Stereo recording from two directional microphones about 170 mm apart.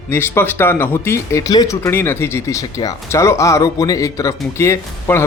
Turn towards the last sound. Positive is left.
turn(degrees=15)  # may be behind; listen again after turning